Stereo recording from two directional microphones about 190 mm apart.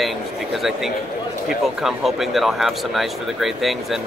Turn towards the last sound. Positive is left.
turn(degrees=0)  # may be behind; listen again after turning